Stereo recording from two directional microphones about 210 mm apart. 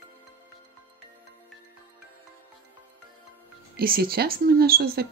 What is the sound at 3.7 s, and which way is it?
Speech, 45° right (ahead or behind).